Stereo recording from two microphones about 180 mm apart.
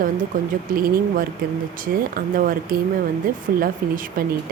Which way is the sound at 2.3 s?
50° right (ahead or behind).